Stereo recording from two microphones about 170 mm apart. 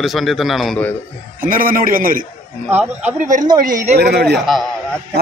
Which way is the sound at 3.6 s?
50° right (ahead or behind).